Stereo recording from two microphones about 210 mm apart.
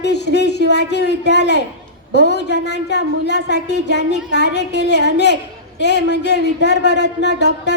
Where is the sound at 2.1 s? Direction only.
55° left (ahead or behind).